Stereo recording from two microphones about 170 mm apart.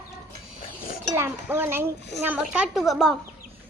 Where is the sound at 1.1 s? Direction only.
15° right (ahead or behind).